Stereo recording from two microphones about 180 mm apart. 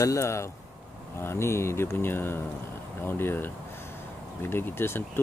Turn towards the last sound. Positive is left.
turn(degrees=10)  # may be behind; listen again after turning